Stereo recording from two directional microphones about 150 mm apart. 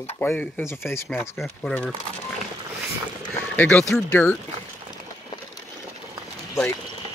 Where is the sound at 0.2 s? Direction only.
10° left (ahead or behind).